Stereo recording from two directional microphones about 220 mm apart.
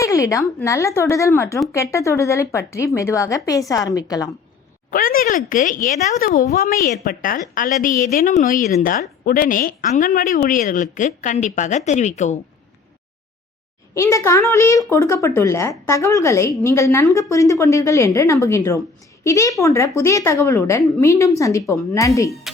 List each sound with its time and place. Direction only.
0.0 s speech: 15° left (ahead or behind)
4.9 s speech: 40° left (ahead or behind)
13.9 s speech: 15° left (ahead or behind)